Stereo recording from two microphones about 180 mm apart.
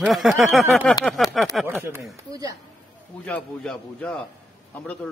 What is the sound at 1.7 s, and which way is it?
Speech, 15° right (ahead or behind).